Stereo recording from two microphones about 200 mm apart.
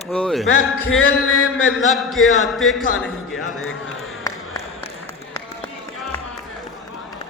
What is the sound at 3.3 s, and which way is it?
Music, 90° left.